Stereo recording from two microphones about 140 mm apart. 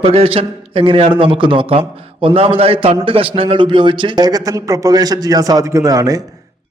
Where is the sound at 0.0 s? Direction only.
40° right (ahead or behind); by 6.2 s 25° right (ahead or behind).